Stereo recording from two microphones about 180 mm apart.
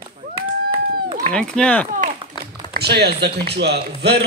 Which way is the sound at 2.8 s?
65° right (ahead or behind).